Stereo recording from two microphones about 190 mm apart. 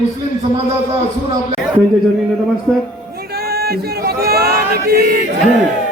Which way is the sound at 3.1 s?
55° right (ahead or behind).